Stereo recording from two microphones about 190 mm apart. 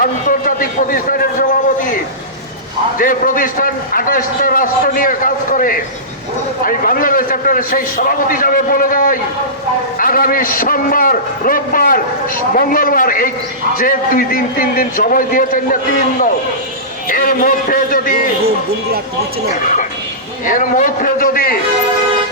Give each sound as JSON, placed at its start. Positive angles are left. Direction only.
{"t": 0.0, "sound": "a sound", "side_deg": 45}
{"t": 3.0, "sound": "a man's voice", "side_deg": 45}
{"t": 17.1, "sound": "a man's voice", "side_deg": 45}
{"t": 18.4, "sound": "speech", "side_deg": -55}
{"t": 20.4, "sound": "a man's voice", "side_deg": 45}